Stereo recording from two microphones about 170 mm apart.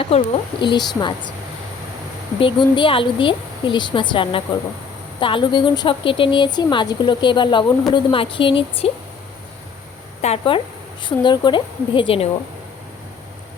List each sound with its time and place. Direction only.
0.1 s a woman's voice: 35° left (ahead or behind)
2.4 s a woman's voice: 30° left (ahead or behind)
10.2 s a woman's voice: 40° left (ahead or behind)